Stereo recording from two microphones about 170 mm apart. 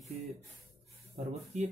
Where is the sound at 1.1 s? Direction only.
40° right (ahead or behind).